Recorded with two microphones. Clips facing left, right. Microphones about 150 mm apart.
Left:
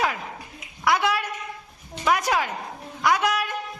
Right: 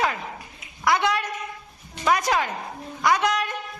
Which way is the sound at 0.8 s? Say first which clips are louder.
Even; 5° left (ahead or behind).